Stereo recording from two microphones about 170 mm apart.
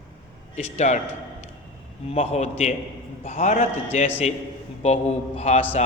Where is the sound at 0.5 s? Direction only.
45° left (ahead or behind).